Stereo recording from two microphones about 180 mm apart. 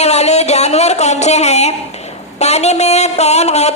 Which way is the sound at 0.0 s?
35° left (ahead or behind).